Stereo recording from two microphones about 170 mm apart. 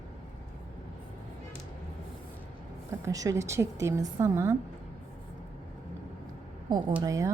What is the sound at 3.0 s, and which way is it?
A woman's voice, 20° right (ahead or behind).